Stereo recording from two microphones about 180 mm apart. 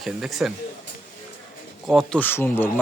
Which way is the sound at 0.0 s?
Centre (ahead or behind).